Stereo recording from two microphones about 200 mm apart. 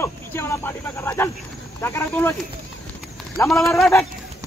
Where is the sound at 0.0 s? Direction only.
10° left (ahead or behind).